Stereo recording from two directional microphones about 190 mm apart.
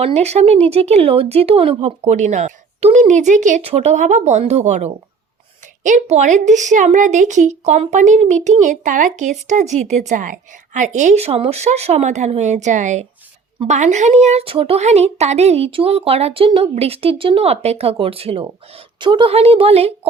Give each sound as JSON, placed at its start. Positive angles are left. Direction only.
{"t": 0.0, "sound": "a woman's voice", "side_deg": -35}